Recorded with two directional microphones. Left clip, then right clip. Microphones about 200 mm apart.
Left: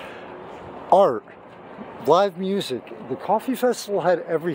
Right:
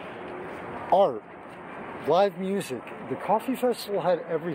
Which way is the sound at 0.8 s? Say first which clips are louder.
Left 5 dB; 60° left (ahead or behind).